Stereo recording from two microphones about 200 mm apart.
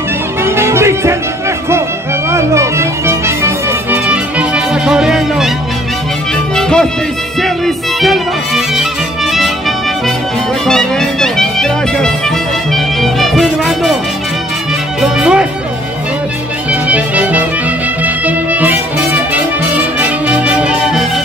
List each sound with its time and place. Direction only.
0.4 s music: 10° right (ahead or behind)
2.3 s music: 15° right (ahead or behind)
6.5 s music: 5° left (ahead or behind)
15.0 s speech: 5° right (ahead or behind)
16.8 s music: 5° right (ahead or behind)